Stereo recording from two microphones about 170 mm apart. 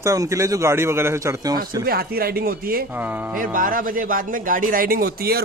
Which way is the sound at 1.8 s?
65° right (ahead or behind).